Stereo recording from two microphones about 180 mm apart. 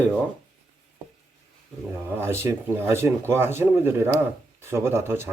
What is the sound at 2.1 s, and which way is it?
Speech, 15° right (ahead or behind).